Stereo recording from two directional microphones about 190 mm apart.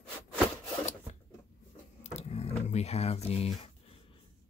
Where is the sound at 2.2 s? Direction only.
35° left (ahead or behind).